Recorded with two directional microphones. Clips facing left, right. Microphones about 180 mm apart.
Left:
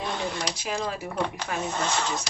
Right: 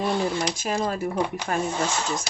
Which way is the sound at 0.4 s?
45° right (ahead or behind).